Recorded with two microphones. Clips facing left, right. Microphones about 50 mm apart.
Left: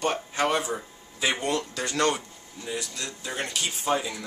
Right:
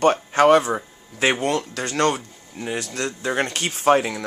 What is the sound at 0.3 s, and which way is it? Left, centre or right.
Speech, right.